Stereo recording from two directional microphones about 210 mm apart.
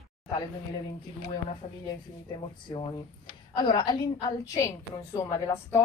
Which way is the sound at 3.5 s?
20° left (ahead or behind).